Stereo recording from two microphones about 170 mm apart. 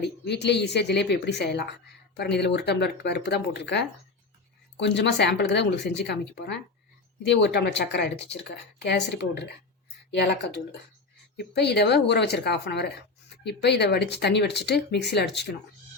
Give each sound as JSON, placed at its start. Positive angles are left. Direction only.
{"t": 0.0, "sound": "speech", "side_deg": 80}
{"t": 7.2, "sound": "speech", "side_deg": 90}